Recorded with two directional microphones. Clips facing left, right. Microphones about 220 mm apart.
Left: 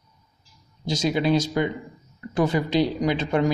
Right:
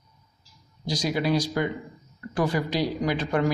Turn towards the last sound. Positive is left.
turn(degrees=25)  # may be behind; listen again after turning